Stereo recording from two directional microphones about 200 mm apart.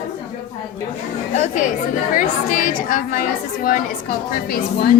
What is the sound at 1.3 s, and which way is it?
A woman's voice, 40° left (ahead or behind).